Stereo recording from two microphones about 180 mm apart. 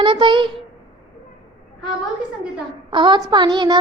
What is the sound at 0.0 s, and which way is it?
Child singing, 25° right (ahead or behind).